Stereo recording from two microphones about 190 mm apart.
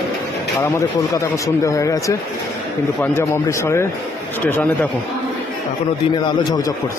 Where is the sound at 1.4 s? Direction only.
15° left (ahead or behind).